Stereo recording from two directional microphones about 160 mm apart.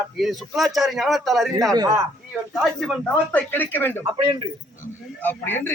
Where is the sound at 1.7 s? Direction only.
20° right (ahead or behind).